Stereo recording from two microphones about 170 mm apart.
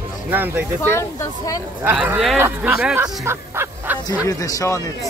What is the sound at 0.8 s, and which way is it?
Speech, 15° left (ahead or behind).